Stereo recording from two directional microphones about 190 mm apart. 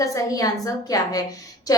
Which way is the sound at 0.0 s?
20° left (ahead or behind).